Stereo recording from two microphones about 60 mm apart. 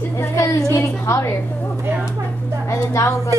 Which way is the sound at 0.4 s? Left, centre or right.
Left.